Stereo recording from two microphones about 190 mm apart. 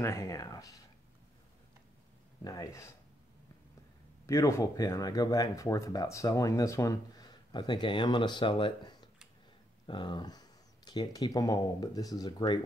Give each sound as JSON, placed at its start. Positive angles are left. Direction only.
{"t": 0.0, "sound": "speech", "side_deg": 15}
{"t": 2.4, "sound": "speech", "side_deg": 20}
{"t": 4.3, "sound": "speech", "side_deg": 15}